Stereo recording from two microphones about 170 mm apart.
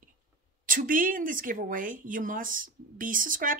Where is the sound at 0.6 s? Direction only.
55° right (ahead or behind).